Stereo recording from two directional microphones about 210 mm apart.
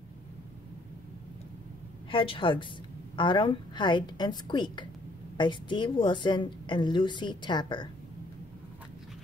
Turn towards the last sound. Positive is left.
turn(degrees=20)  # may be behind; listen again after turning